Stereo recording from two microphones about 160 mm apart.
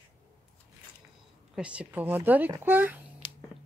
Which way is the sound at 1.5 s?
5° right (ahead or behind).